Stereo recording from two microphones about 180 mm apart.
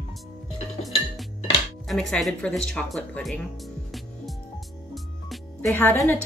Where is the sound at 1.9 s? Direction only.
Centre (ahead or behind).